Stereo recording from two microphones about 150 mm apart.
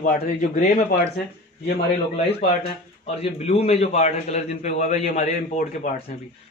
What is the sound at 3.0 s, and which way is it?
A man's voice, 45° left (ahead or behind).